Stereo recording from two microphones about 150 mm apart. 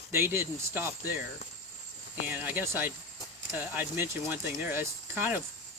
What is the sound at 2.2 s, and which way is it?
Speech, 10° right (ahead or behind).